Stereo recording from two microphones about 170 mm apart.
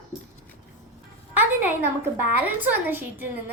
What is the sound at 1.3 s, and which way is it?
A woman's voice, 10° right (ahead or behind).